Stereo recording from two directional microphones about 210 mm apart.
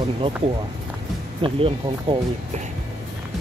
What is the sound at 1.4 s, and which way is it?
Speech, 25° right (ahead or behind).